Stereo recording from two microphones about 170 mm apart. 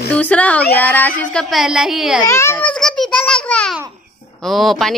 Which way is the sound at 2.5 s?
5° left (ahead or behind).